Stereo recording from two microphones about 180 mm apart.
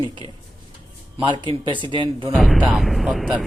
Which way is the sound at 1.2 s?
25° right (ahead or behind).